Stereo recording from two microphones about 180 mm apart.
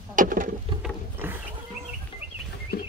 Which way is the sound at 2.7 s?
60° left (ahead or behind).